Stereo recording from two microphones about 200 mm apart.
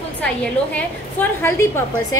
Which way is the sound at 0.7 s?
10° left (ahead or behind).